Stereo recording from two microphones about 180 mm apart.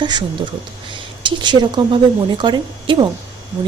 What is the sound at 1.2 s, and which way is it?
A woman's voice, 25° right (ahead or behind).